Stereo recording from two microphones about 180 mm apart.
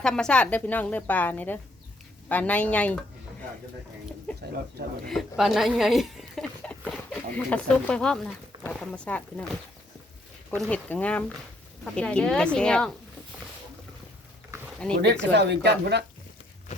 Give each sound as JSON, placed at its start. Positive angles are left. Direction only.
{"t": 0.0, "sound": "a woman's voice", "side_deg": 5}
{"t": 4.3, "sound": "a sound", "side_deg": 5}
{"t": 5.0, "sound": "speech", "side_deg": 0}
{"t": 10.5, "sound": "a woman's voice", "side_deg": 10}
{"t": 15.0, "sound": "speech", "side_deg": -70}